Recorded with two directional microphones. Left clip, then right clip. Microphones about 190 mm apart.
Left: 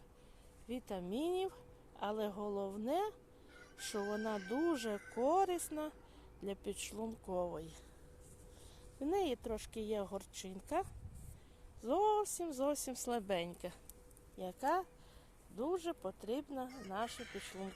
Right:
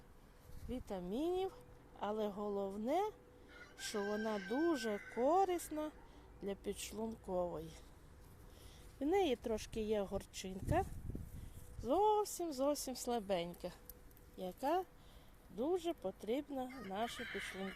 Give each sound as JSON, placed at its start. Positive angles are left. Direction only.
{"t": 0.7, "sound": "a woman's voice", "side_deg": 5}
{"t": 9.0, "sound": "a woman's voice", "side_deg": -10}
{"t": 17.2, "sound": "speech", "side_deg": 55}